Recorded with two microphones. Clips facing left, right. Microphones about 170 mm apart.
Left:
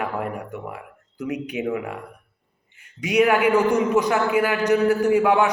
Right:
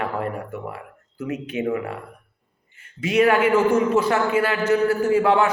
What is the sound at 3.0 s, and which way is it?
A man's voice, 15° left (ahead or behind).